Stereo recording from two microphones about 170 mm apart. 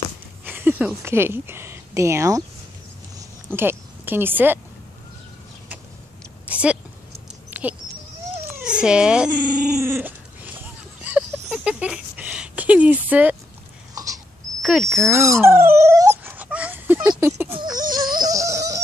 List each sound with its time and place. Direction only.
0.5 s speech: 10° right (ahead or behind)
3.5 s speech: 10° right (ahead or behind)
6.4 s a sound: 5° right (ahead or behind)
7.5 s goat: 10° right (ahead or behind)
8.5 s speech: 5° right (ahead or behind)
9.8 s dog: 10° right (ahead or behind)
11.1 s a sound: 5° right (ahead or behind)
14.6 s speech: centre (ahead or behind)
15.0 s speech: 15° right (ahead or behind)
15.4 s dog: 15° right (ahead or behind)
17.0 s a sound: 20° right (ahead or behind)
17.9 s music: 25° right (ahead or behind)